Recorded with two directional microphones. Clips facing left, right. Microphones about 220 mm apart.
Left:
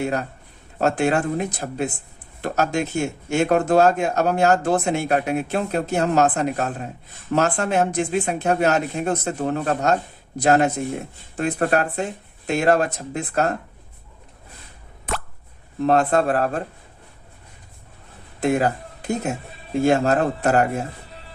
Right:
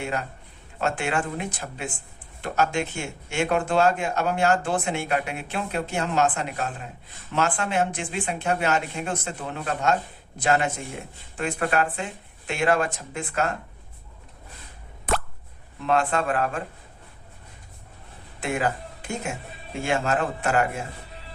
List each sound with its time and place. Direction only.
0.0 s speech: 40° left (ahead or behind)
15.8 s speech: 40° left (ahead or behind)
18.3 s speech: 40° left (ahead or behind)